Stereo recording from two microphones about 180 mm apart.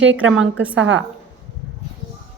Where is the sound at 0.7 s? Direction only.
90° right.